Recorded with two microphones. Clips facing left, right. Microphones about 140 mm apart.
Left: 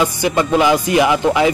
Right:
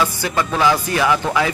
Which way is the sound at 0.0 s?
15° left (ahead or behind).